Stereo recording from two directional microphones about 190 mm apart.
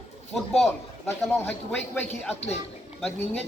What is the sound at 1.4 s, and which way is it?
A man's voice, 10° left (ahead or behind).